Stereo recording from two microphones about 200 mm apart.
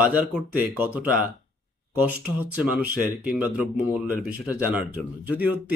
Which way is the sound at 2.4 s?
10° right (ahead or behind).